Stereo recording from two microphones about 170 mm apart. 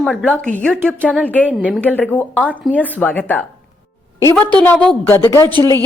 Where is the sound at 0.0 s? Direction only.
5° left (ahead or behind).